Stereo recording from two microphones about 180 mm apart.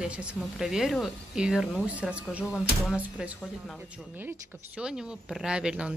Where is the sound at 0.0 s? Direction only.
5° right (ahead or behind).